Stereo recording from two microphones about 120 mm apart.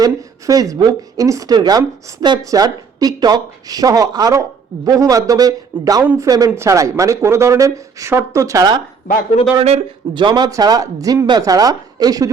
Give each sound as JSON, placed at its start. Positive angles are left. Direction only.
{"t": 0.0, "sound": "speech", "side_deg": -30}
{"t": 9.6, "sound": "a man's voice", "side_deg": -65}
{"t": 10.2, "sound": "speech", "side_deg": -35}